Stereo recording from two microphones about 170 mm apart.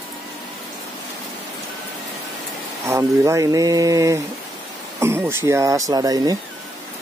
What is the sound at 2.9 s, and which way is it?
Speech, 20° right (ahead or behind).